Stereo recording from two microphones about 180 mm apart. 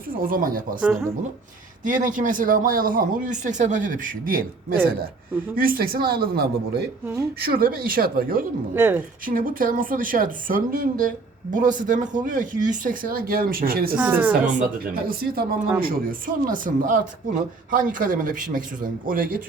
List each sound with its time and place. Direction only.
0.2 s speech: 50° right (ahead or behind)
0.8 s a woman's voice: 10° right (ahead or behind)
1.8 s speech: 45° right (ahead or behind)
8.7 s a woman's voice: 10° right (ahead or behind)
9.2 s speech: 50° right (ahead or behind)
14.0 s a woman's voice: 10° right (ahead or behind)
14.4 s speech: 50° right (ahead or behind)